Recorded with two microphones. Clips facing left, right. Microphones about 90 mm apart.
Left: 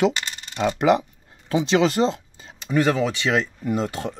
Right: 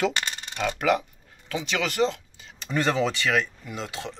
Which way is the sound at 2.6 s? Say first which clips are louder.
Left 4 dB; 10° left (ahead or behind).